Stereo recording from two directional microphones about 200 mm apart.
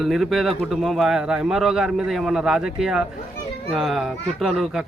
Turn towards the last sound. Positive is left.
turn(degrees=0)  # may be behind; listen again after turning